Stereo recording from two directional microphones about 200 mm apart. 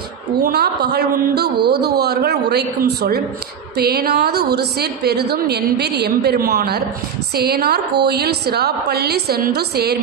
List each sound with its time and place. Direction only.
0.4 s a woman's voice: 55° right (ahead or behind)